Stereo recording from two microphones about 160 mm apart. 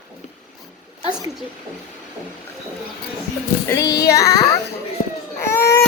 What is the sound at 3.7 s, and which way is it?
Child singing, 20° left (ahead or behind).